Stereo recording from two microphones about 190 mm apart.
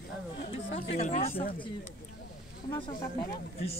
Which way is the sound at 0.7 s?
35° left (ahead or behind).